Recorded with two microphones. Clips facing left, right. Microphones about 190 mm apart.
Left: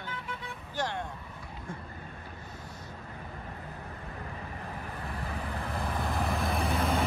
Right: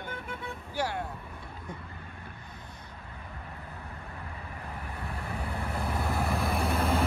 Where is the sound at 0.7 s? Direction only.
10° right (ahead or behind).